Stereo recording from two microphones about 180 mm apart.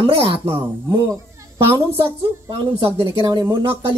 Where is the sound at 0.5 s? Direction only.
15° right (ahead or behind).